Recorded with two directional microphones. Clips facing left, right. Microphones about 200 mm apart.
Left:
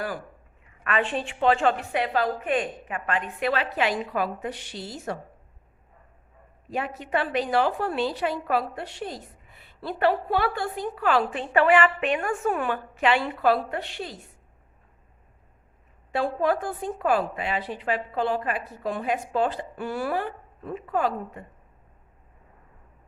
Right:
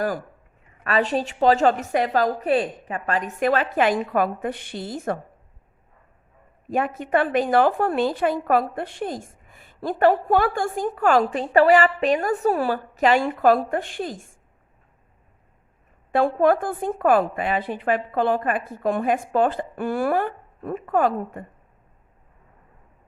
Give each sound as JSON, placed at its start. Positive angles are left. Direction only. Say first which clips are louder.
{"t": 0.9, "sound": "a woman's voice", "louder": "right 4 dB", "side_deg": -40}
{"t": 6.7, "sound": "a woman's voice", "louder": "right 6 dB", "side_deg": -50}
{"t": 16.1, "sound": "a woman's voice", "louder": "right 6 dB", "side_deg": -55}